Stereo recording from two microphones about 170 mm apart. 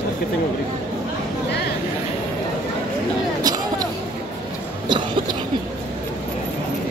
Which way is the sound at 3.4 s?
20° right (ahead or behind).